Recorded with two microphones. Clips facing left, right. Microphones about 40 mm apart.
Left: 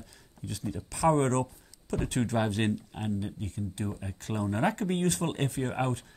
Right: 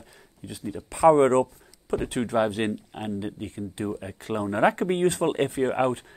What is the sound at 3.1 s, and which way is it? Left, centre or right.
Speech, right.